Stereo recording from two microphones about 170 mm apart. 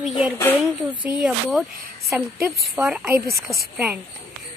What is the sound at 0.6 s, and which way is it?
A woman's voice, centre (ahead or behind).